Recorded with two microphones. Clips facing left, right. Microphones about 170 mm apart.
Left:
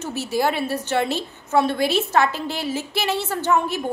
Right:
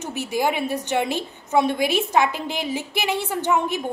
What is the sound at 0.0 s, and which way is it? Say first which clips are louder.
A woman's voice: left 1 dB; 15° right (ahead or behind).